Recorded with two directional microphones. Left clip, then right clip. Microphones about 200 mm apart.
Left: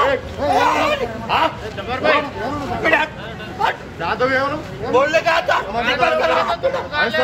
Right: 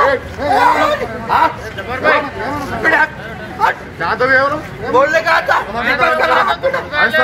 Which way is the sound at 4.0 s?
20° left (ahead or behind).